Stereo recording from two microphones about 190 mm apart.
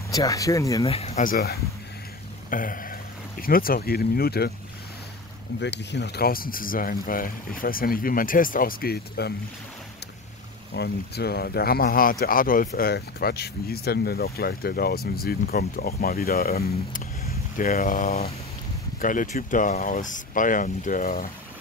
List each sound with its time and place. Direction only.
0.1 s speech: 20° left (ahead or behind)
0.8 s speech: 35° left (ahead or behind); by 4.5 s 55° left (ahead or behind)
5.6 s speech: 65° left (ahead or behind)
10.7 s speech: 60° left (ahead or behind)